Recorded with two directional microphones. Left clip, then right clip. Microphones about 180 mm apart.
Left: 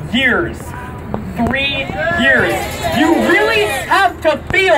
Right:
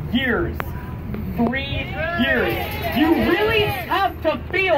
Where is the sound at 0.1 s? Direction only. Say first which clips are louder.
Left 8 dB; 25° left (ahead or behind).